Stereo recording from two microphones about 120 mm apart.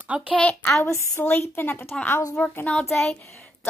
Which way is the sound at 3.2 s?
20° left (ahead or behind).